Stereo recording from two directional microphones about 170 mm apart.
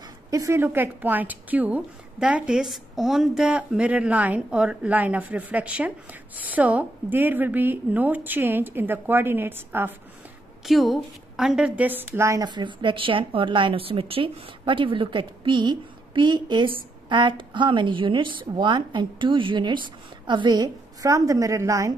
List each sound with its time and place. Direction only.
0.3 s a woman's voice: 20° right (ahead or behind)
10.6 s a woman's voice: centre (ahead or behind); by 21.9 s 20° right (ahead or behind)